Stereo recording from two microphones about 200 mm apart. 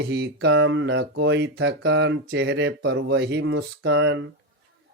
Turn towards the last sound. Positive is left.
turn(degrees=-65)  # may be behind; listen again after turning